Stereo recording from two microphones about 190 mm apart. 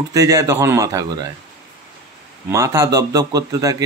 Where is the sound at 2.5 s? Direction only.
15° right (ahead or behind).